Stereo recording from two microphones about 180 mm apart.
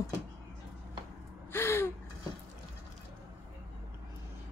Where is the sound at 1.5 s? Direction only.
15° left (ahead or behind).